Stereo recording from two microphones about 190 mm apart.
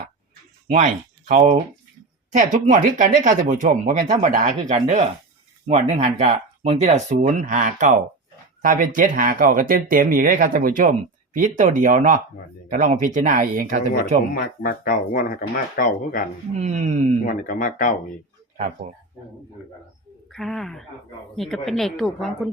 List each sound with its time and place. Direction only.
0.7 s speech: 40° right (ahead or behind)
14.3 s speech: 45° left (ahead or behind)
16.6 s speech: 35° right (ahead or behind)
17.2 s speech: 45° left (ahead or behind)
20.3 s speech: centre (ahead or behind)